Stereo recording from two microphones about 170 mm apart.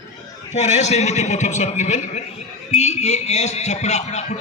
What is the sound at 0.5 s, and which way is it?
A man's voice, 40° left (ahead or behind).